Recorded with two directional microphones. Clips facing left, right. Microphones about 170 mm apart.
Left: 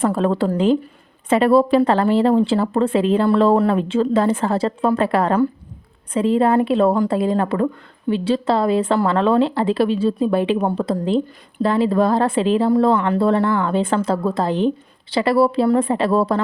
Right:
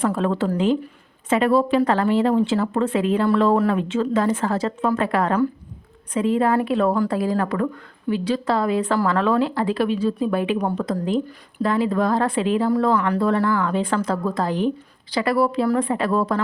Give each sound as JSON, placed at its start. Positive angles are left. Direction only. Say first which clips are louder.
{"t": 0.0, "sound": "a woman's voice", "louder": "left 3 dB", "side_deg": 35}